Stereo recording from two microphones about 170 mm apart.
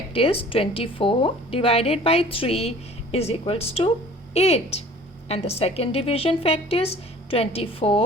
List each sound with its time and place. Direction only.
0.1 s a woman's voice: 35° left (ahead or behind)